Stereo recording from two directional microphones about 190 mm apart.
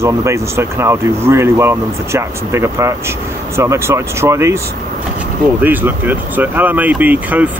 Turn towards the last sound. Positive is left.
turn(degrees=-10)  # may be behind; listen again after turning